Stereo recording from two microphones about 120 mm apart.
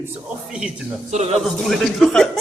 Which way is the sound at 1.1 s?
60° right (ahead or behind).